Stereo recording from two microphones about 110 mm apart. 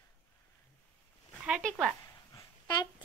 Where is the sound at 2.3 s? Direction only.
40° left (ahead or behind).